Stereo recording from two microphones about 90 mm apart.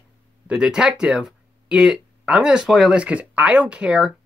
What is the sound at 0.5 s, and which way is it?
Speech, 10° right (ahead or behind).